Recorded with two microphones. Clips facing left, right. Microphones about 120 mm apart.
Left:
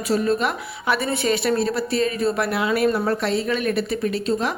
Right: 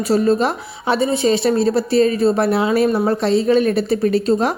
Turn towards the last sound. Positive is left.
turn(degrees=-40)  # may be behind; listen again after turning